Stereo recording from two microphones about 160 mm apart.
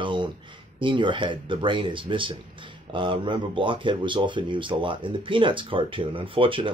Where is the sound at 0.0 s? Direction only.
30° right (ahead or behind).